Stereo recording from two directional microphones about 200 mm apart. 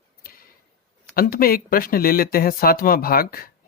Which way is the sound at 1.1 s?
45° left (ahead or behind).